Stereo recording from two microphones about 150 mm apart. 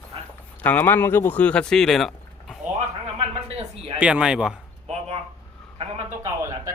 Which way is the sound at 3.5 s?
40° right (ahead or behind).